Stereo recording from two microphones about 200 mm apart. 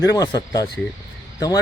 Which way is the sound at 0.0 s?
20° left (ahead or behind).